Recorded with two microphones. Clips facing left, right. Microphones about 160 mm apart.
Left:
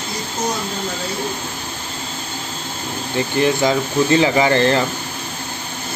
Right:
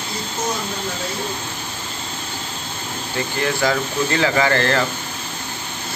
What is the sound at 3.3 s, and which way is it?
Speech, 20° left (ahead or behind).